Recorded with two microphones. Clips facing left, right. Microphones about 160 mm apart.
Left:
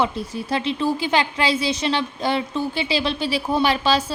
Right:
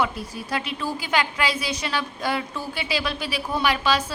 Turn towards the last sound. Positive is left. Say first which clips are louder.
# left 4 dB
turn(degrees=30)  # may be behind; listen again after turning